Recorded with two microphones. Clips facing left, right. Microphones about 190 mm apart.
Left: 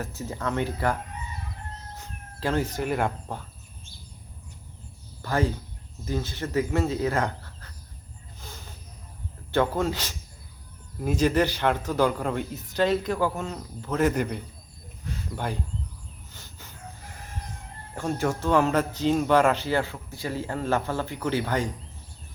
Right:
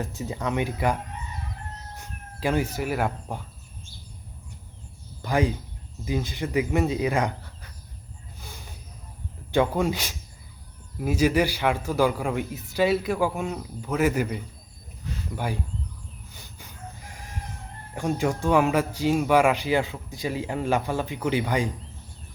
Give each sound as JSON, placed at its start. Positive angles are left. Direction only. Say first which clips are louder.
{"t": 0.0, "sound": "speech", "louder": "right 1 dB", "side_deg": -15}
{"t": 2.4, "sound": "speech", "louder": "right 1 dB", "side_deg": -10}
{"t": 5.2, "sound": "speech", "louder": "right 2 dB", "side_deg": -15}
{"t": 8.4, "sound": "a sound", "louder": "even", "side_deg": -10}
{"t": 9.5, "sound": "speech", "louder": "right 2 dB", "side_deg": -15}
{"t": 16.3, "sound": "a sound", "louder": "right 1 dB", "side_deg": -15}
{"t": 17.9, "sound": "speech", "louder": "right 2 dB", "side_deg": -15}